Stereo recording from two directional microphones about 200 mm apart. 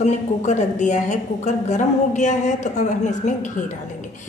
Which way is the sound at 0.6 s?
35° left (ahead or behind).